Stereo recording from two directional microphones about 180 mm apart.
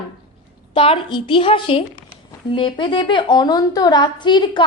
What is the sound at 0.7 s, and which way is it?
A woman's voice, 30° left (ahead or behind).